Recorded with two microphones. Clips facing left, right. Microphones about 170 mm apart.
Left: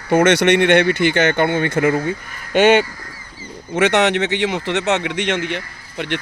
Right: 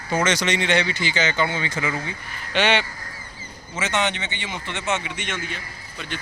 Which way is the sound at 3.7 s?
70° left (ahead or behind).